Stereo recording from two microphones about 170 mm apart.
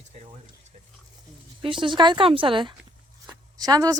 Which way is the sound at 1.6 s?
30° right (ahead or behind).